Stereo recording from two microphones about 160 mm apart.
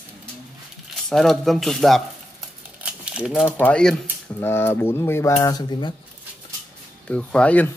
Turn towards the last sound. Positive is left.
turn(degrees=10)  # may be behind; listen again after turning